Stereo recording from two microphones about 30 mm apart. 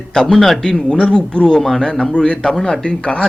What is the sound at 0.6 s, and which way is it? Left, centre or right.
A man's voice, left.